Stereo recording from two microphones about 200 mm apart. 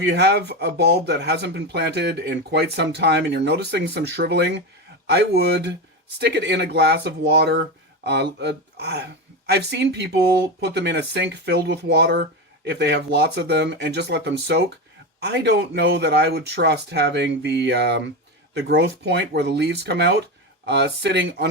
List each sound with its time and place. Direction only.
0.0 s speech: 55° right (ahead or behind)